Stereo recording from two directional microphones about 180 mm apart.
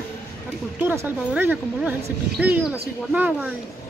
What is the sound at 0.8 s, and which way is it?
Speech, 10° right (ahead or behind).